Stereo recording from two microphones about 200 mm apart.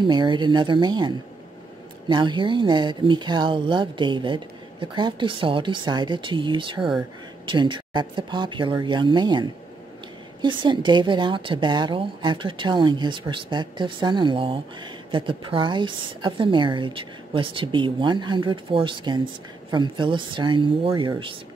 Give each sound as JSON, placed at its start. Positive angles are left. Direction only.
{"t": 0.0, "sound": "a woman's voice", "side_deg": -20}